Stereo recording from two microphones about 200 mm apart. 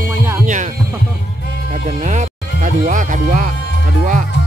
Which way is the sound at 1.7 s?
35° right (ahead or behind).